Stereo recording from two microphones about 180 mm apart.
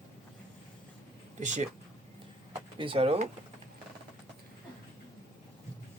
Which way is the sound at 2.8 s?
30° right (ahead or behind).